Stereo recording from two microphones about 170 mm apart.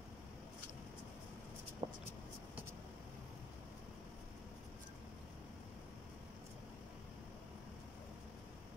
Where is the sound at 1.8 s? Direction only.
35° right (ahead or behind).